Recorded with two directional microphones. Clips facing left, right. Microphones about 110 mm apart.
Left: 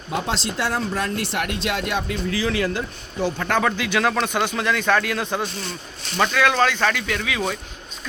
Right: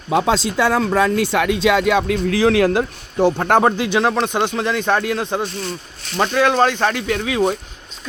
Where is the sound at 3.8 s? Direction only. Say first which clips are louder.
Right 4 dB; 30° right (ahead or behind).